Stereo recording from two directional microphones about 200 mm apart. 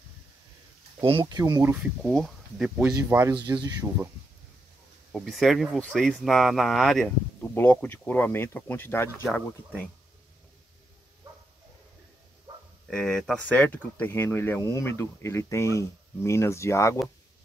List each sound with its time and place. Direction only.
1.0 s speech: 25° right (ahead or behind)
2.0 s speech: centre (ahead or behind)
3.1 s speech: 10° right (ahead or behind)
5.1 s speech: centre (ahead or behind)
12.9 s speech: 5° left (ahead or behind)